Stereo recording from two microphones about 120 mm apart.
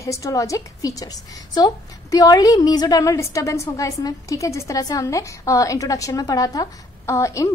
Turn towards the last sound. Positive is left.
turn(degrees=25)  # may be behind; listen again after turning